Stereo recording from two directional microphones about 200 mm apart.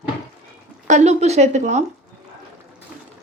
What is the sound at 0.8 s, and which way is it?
Speech, 35° right (ahead or behind).